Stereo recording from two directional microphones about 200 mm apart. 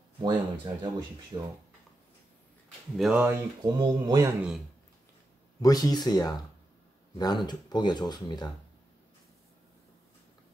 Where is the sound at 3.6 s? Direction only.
20° right (ahead or behind).